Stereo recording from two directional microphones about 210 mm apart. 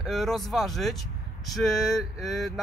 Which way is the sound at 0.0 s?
Centre (ahead or behind).